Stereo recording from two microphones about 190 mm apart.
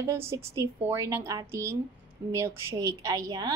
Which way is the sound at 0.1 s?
15° right (ahead or behind).